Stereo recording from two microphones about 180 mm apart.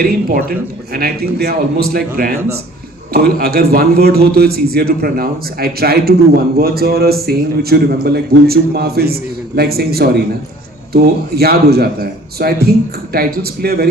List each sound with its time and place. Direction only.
0.0 s a man's voice: 55° right (ahead or behind)